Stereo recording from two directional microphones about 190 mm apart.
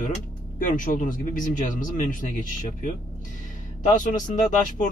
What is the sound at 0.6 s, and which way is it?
Speech, 45° left (ahead or behind).